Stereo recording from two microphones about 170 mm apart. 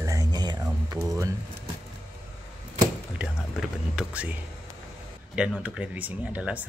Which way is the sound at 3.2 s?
5° right (ahead or behind).